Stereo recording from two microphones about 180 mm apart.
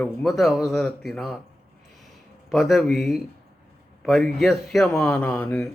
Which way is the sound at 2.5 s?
Centre (ahead or behind).